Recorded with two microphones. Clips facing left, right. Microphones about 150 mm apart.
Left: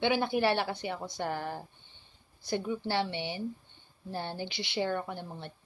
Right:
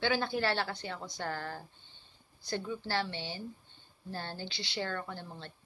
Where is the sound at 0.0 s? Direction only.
20° left (ahead or behind).